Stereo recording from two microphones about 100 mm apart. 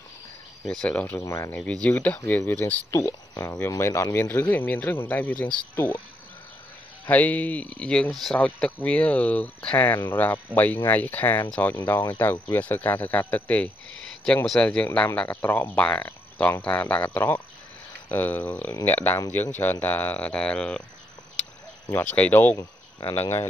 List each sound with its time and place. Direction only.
0.7 s speech: 10° left (ahead or behind)
1.2 s speech: 30° left (ahead or behind)
1.5 s speech: 10° left (ahead or behind)
2.9 s speech: 30° left (ahead or behind)
4.1 s speech: 20° left (ahead or behind)
7.1 s speech: 15° left (ahead or behind)
9.8 s speech: 25° left (ahead or behind)
14.2 s speech: 5° left (ahead or behind)
21.9 s speech: 15° left (ahead or behind)
22.6 s cricket: 45° left (ahead or behind)
23.1 s speech: 20° left (ahead or behind)